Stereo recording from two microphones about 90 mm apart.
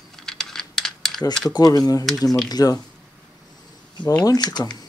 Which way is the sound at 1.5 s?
45° left (ahead or behind).